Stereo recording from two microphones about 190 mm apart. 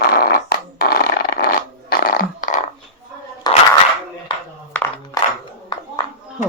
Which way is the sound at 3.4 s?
20° left (ahead or behind).